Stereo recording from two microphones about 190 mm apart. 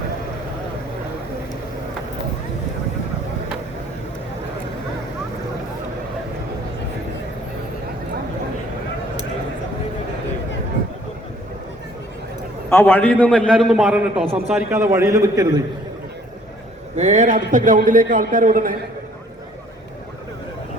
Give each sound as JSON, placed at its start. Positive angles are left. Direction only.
{"t": 12.7, "sound": "a man's voice", "side_deg": 10}
{"t": 17.0, "sound": "a man's voice", "side_deg": -40}